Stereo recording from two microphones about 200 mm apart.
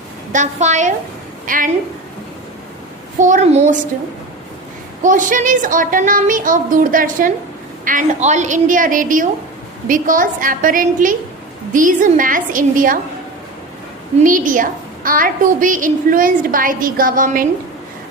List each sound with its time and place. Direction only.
0.3 s a woman's voice: 35° right (ahead or behind)
3.2 s a woman's voice: 40° right (ahead or behind)
5.0 s a woman's voice: 40° right (ahead or behind)
14.3 s a woman's voice: 40° right (ahead or behind)